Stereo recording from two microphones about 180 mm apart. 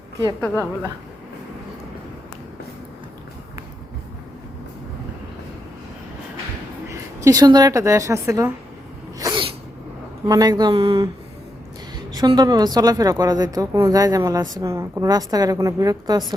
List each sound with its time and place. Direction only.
6.8 s a woman's voice: 15° right (ahead or behind)
9.1 s sneeze: 25° right (ahead or behind)
10.2 s a woman's voice: 20° right (ahead or behind)